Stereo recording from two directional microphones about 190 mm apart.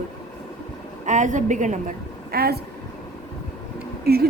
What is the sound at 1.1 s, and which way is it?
A woman's voice, 40° right (ahead or behind).